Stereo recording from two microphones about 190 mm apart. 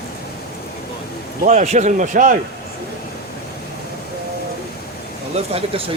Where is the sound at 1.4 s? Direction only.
40° right (ahead or behind).